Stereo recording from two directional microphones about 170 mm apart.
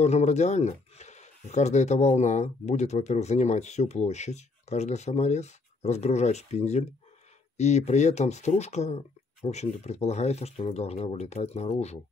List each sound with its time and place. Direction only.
0.0 s speech: 40° left (ahead or behind)